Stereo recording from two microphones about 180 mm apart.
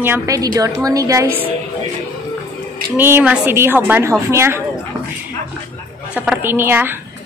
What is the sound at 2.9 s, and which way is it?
Speech, 10° right (ahead or behind).